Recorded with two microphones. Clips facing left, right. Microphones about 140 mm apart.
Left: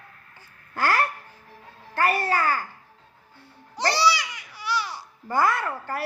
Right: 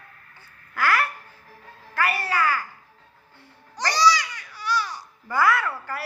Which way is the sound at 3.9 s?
10° left (ahead or behind).